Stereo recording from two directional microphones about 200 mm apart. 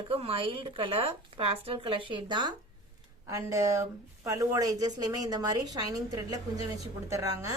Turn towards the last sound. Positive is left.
turn(degrees=-15)  # may be behind; listen again after turning